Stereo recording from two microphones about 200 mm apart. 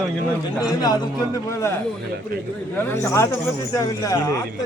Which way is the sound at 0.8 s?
20° left (ahead or behind).